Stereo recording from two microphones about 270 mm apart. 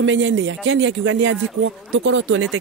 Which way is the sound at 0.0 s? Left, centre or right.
Right.